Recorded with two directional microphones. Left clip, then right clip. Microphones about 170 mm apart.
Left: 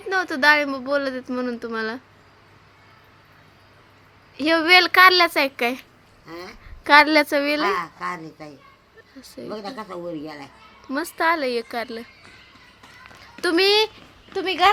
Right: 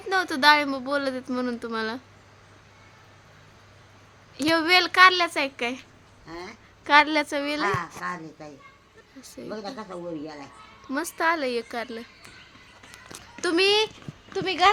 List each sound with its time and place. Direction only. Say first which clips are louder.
0.1 s speech: left 2 dB; 10° left (ahead or behind)
4.4 s a woman's voice: left 5 dB; 15° left (ahead or behind); by 5.8 s 35° left (ahead or behind)
6.2 s a woman's voice: left 2 dB; 20° left (ahead or behind)
7.7 s speech: left 4 dB; 60° left (ahead or behind)
9.2 s a woman's voice: left 4 dB; 20° left (ahead or behind)
9.5 s speech: left 3 dB; 65° left (ahead or behind)
10.8 s a woman's voice: left 3 dB; 20° left (ahead or behind)
13.3 s a child's voice: left 3 dB; 20° left (ahead or behind)
14.3 s a woman's voice: left 3 dB; 20° left (ahead or behind)